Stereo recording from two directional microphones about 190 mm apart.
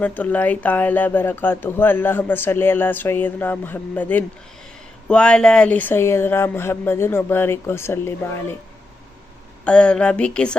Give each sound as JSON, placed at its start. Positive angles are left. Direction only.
{"t": 0.0, "sound": "speech", "side_deg": 10}
{"t": 9.6, "sound": "a woman's voice", "side_deg": 5}